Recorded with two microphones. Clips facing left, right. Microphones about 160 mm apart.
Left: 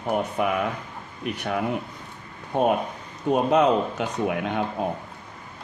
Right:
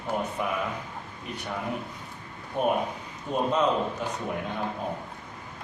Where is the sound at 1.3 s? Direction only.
75° left (ahead or behind).